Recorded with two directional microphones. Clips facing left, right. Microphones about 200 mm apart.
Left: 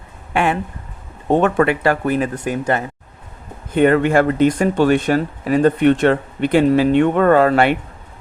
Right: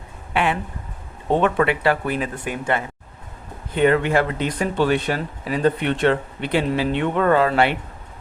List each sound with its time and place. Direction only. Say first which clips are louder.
0.3 s speech: left 3 dB; 45° left (ahead or behind)